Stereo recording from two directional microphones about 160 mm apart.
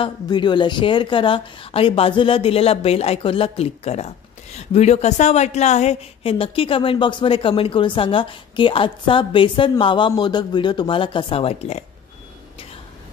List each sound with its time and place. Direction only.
0.0 s a woman's voice: 30° left (ahead or behind)